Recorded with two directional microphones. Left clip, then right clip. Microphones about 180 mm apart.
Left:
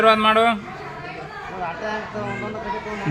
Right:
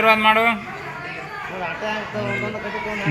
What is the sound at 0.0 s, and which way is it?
Speech, 60° left (ahead or behind).